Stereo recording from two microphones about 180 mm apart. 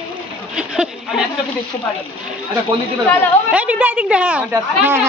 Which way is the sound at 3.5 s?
5° right (ahead or behind).